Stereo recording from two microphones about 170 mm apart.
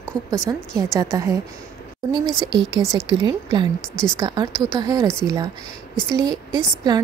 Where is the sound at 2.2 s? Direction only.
Centre (ahead or behind).